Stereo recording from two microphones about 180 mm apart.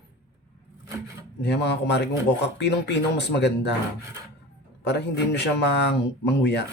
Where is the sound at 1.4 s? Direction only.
70° left (ahead or behind).